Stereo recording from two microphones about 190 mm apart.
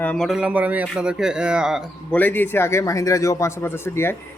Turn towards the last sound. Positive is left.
turn(degrees=10)  # may be behind; listen again after turning